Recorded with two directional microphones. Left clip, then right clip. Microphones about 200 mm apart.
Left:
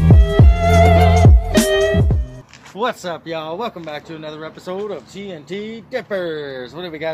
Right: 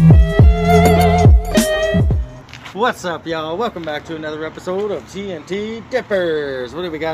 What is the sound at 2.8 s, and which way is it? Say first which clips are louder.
Speech: right 3 dB; 15° left (ahead or behind).